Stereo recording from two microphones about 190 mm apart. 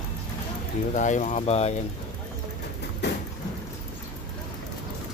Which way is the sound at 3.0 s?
65° left (ahead or behind).